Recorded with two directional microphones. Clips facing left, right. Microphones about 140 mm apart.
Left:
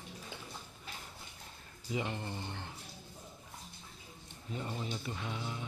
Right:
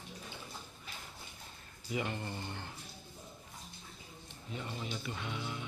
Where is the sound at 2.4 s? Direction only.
25° left (ahead or behind).